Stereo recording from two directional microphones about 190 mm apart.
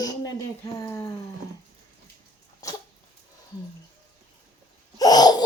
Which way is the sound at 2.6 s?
15° left (ahead or behind).